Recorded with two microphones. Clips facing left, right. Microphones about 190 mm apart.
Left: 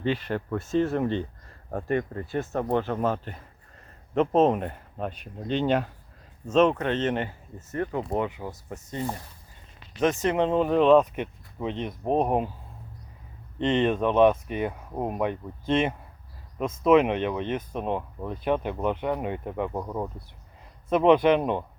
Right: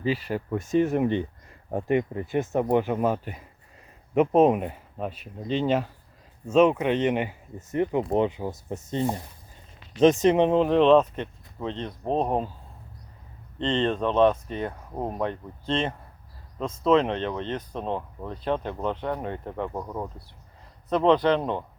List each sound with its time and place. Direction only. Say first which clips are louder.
0.0 s speech: even; 5° right (ahead or behind)
10.5 s speech: left 3 dB; centre (ahead or behind)
13.6 s speech: left 2 dB; 15° left (ahead or behind)